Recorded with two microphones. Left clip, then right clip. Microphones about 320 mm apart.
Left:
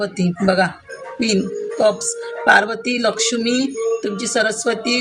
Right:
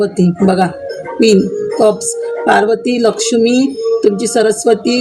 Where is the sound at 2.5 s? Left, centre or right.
Left.